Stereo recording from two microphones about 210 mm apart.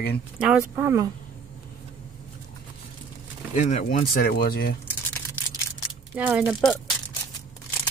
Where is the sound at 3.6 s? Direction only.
35° left (ahead or behind).